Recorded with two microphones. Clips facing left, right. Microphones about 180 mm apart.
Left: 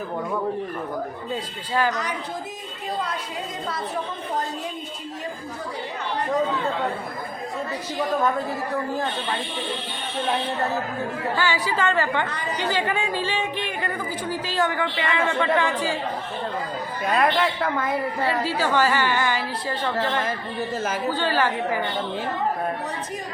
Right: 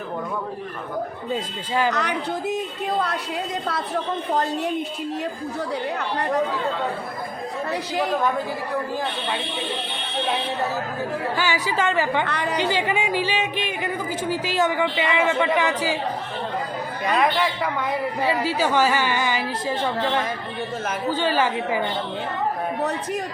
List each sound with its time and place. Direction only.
1.9 s a woman's voice: 65° right (ahead or behind)
11.3 s a woman's voice: 20° right (ahead or behind)
12.2 s a woman's voice: 70° right (ahead or behind)
12.5 s a woman's voice: 15° right (ahead or behind)
17.0 s a woman's voice: centre (ahead or behind)
18.4 s a woman's voice: 15° right (ahead or behind)
21.1 s a woman's voice: 15° right (ahead or behind)